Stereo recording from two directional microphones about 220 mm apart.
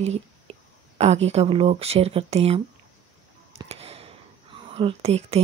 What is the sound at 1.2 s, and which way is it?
Speech, 30° right (ahead or behind).